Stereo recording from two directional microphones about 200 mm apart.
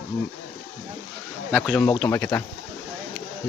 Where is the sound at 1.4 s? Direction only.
Centre (ahead or behind).